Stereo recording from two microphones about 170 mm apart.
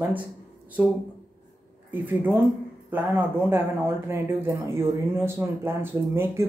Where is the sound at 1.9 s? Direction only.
10° right (ahead or behind).